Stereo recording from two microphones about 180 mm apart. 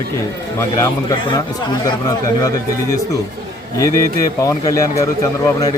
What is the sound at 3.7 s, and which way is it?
A man's voice, 20° left (ahead or behind).